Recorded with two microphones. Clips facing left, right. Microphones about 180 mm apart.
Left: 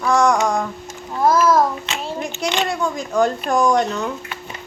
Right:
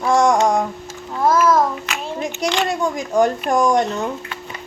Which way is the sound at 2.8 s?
15° right (ahead or behind).